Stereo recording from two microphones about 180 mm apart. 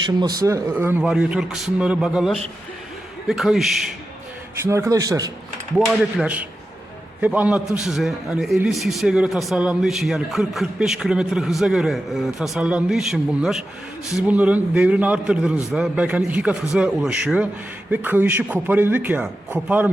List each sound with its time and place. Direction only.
0.2 s a man's voice: 20° right (ahead or behind); by 3.7 s centre (ahead or behind)
4.6 s a man's voice: 15° right (ahead or behind)
5.7 s a man's voice: centre (ahead or behind)